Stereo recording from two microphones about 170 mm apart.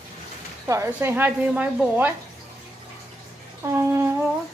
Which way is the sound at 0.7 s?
15° right (ahead or behind).